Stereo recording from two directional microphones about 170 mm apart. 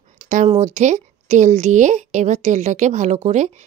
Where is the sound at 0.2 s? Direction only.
50° right (ahead or behind).